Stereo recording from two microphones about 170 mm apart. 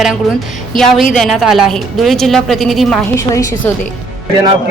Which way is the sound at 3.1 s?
15° left (ahead or behind).